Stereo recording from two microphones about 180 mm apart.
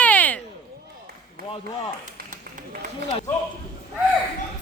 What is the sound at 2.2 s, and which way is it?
Run, 45° right (ahead or behind).